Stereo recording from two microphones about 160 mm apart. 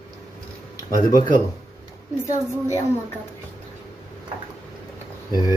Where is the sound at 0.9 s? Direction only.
20° left (ahead or behind).